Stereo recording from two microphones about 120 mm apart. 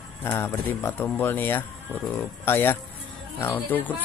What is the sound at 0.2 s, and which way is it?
Mantra, 20° left (ahead or behind).